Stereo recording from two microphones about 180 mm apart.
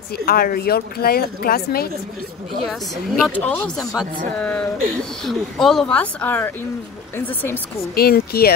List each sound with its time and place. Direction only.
0.2 s speech: 55° left (ahead or behind)
2.6 s a woman's voice: centre (ahead or behind)
7.9 s speech: 60° left (ahead or behind)